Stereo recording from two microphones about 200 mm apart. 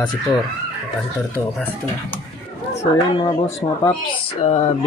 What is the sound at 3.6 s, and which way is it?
Speech, 20° left (ahead or behind).